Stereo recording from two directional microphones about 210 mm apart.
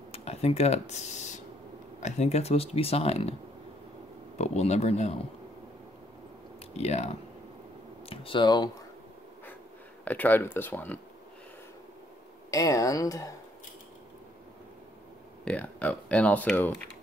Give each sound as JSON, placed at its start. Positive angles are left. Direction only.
{"t": 0.1, "sound": "a sound", "side_deg": 30}
{"t": 2.0, "sound": "speech", "side_deg": 35}
{"t": 4.4, "sound": "speech", "side_deg": 30}
{"t": 6.8, "sound": "speech", "side_deg": 30}
{"t": 8.1, "sound": "speech", "side_deg": 25}
{"t": 10.0, "sound": "speech", "side_deg": 10}
{"t": 12.4, "sound": "speech", "side_deg": 15}
{"t": 15.4, "sound": "speech", "side_deg": 5}